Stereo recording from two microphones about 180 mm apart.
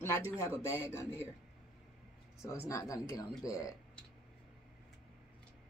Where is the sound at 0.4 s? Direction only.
15° left (ahead or behind).